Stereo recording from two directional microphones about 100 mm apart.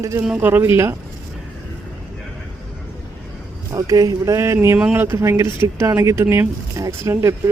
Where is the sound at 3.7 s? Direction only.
35° right (ahead or behind).